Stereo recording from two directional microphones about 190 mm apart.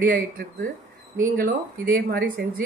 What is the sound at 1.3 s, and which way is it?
Speech, 50° right (ahead or behind).